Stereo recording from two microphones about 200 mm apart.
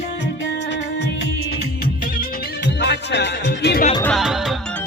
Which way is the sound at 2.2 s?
55° left (ahead or behind).